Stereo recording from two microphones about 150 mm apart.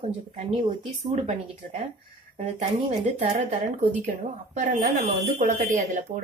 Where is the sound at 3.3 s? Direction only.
55° right (ahead or behind).